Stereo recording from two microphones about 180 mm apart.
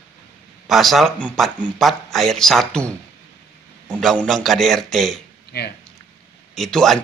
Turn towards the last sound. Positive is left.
turn(degrees=0)  # may be behind; listen again after turning